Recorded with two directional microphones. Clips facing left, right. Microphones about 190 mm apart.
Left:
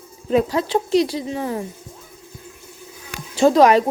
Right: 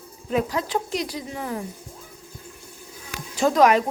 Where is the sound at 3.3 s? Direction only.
30° left (ahead or behind).